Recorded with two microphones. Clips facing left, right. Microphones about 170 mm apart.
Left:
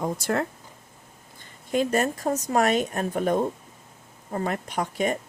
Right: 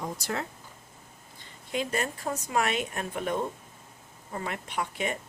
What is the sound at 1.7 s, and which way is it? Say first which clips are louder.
Speech: left 7 dB; 45° left (ahead or behind).